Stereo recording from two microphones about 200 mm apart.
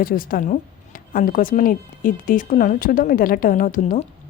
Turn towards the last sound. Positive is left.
turn(degrees=40)  # may be behind; listen again after turning